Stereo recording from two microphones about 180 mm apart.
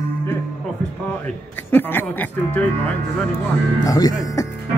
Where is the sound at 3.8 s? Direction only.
20° left (ahead or behind).